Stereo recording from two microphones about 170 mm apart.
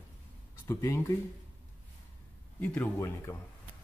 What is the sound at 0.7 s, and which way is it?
Speech, 15° left (ahead or behind).